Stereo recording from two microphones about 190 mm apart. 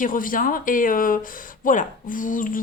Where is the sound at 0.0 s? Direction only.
45° left (ahead or behind).